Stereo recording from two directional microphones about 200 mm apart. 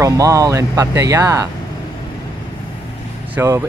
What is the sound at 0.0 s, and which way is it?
Speech, 15° right (ahead or behind).